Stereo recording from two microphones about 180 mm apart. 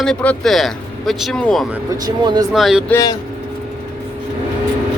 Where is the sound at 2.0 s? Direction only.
20° right (ahead or behind).